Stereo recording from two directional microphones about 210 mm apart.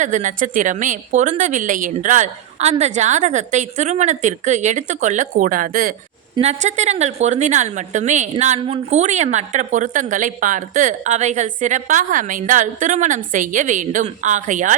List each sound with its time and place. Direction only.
0.0 s a woman's voice: 35° right (ahead or behind)
6.3 s a woman's voice: 30° right (ahead or behind)